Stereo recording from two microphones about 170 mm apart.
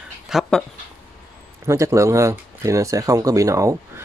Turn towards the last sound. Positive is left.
turn(degrees=-20)  # may be behind; listen again after turning